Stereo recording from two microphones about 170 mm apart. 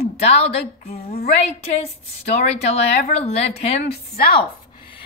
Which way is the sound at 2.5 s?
40° left (ahead or behind).